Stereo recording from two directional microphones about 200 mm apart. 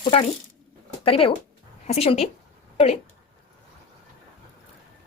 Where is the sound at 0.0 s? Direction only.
30° left (ahead or behind).